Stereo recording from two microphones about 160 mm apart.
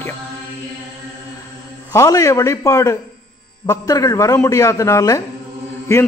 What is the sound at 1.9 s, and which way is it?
A man's voice, 20° left (ahead or behind).